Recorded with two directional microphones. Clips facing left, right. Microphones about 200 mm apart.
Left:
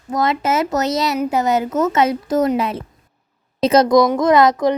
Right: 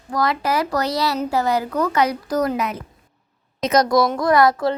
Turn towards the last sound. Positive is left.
turn(degrees=20)  # may be behind; listen again after turning